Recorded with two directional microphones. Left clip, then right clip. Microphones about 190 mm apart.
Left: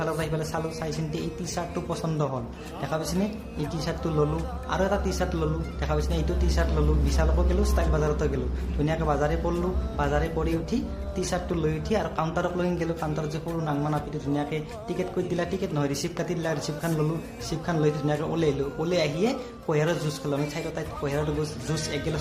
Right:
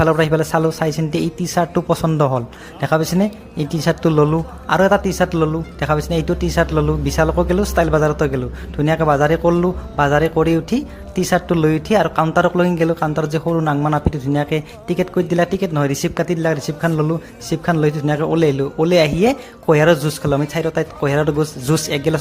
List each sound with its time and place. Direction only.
0.0 s speech: 45° right (ahead or behind)